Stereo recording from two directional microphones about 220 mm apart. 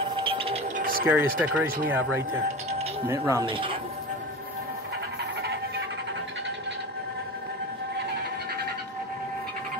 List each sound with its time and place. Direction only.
0.1 s music: 25° right (ahead or behind)
1.0 s speech: 5° right (ahead or behind); by 3.7 s 25° right (ahead or behind)
5.4 s music: 50° right (ahead or behind)